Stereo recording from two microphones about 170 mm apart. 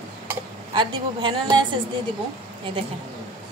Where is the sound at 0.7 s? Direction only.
25° right (ahead or behind).